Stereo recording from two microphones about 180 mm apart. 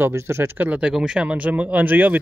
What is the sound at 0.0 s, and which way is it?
Speech, 15° right (ahead or behind).